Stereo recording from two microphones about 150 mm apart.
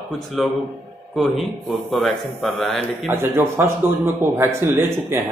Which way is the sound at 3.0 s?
15° right (ahead or behind).